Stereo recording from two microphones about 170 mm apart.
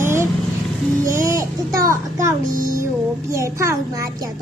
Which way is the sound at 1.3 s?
15° right (ahead or behind).